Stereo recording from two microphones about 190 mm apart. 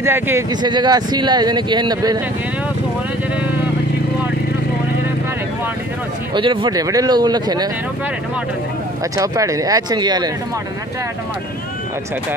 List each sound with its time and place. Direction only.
0.0 s speech: 15° right (ahead or behind)
6.3 s speech: 25° right (ahead or behind)
9.1 s speech: 15° right (ahead or behind)